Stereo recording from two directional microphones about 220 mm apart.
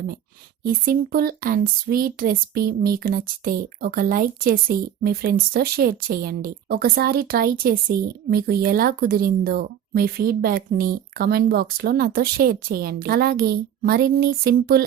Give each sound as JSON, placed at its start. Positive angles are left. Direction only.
{"t": 0.6, "sound": "speech", "side_deg": -40}